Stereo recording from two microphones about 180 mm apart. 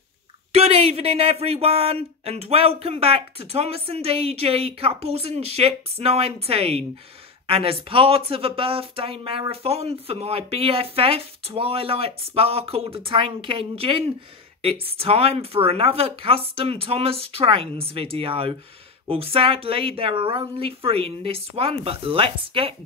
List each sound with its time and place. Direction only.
0.5 s speech: 35° right (ahead or behind)